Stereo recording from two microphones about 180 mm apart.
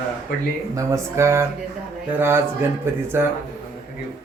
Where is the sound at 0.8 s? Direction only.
15° right (ahead or behind).